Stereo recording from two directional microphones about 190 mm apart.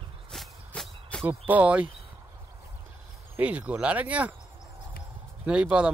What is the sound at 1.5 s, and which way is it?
Speech, 5° right (ahead or behind).